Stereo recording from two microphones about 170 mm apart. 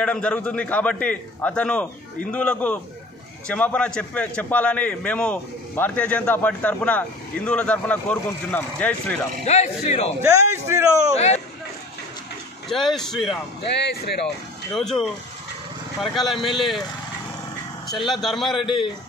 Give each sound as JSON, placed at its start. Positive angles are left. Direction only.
{"t": 0.0, "sound": "a man's voice", "side_deg": 5}
{"t": 9.4, "sound": "speech", "side_deg": 40}
{"t": 10.2, "sound": "a man's voice", "side_deg": -15}
{"t": 12.6, "sound": "speech", "side_deg": 0}
{"t": 13.7, "sound": "speech", "side_deg": 80}
{"t": 14.7, "sound": "speech", "side_deg": 5}
{"t": 17.8, "sound": "speech", "side_deg": 0}
{"t": 18.6, "sound": "speech", "side_deg": 30}